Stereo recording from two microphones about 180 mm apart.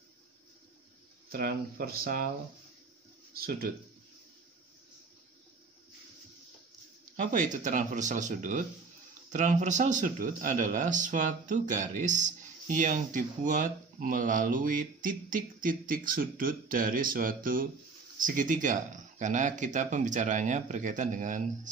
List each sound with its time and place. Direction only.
1.3 s speech: 55° right (ahead or behind)
3.3 s speech: 55° right (ahead or behind)
7.2 s speech: 45° right (ahead or behind)